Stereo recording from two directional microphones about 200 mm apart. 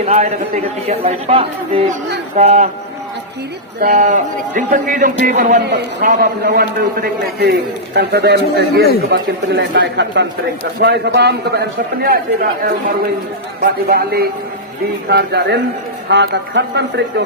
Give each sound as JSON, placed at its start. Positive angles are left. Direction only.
{"t": 0.0, "sound": "speech", "side_deg": -35}
{"t": 3.8, "sound": "a man's voice", "side_deg": -40}
{"t": 9.1, "sound": "a man's voice", "side_deg": -65}
{"t": 13.8, "sound": "a man's voice", "side_deg": -50}